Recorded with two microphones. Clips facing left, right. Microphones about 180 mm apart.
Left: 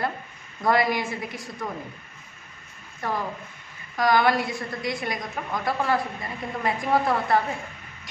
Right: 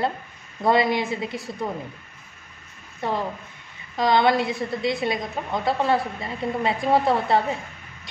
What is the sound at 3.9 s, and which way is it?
Speech, 25° right (ahead or behind).